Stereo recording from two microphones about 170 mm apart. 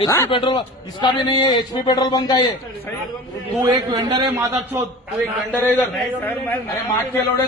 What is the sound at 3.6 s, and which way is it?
Speech, 25° right (ahead or behind).